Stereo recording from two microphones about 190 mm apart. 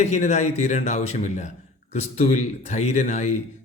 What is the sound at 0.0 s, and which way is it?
Speech, 35° left (ahead or behind).